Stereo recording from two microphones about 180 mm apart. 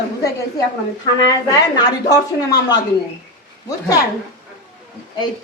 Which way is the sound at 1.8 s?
20° left (ahead or behind).